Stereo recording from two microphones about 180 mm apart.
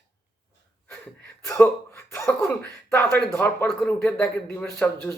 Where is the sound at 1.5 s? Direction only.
15° left (ahead or behind).